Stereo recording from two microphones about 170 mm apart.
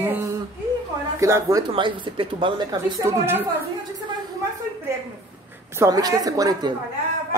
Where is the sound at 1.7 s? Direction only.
30° right (ahead or behind).